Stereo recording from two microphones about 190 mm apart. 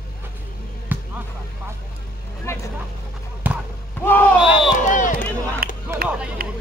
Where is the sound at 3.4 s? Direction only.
10° right (ahead or behind).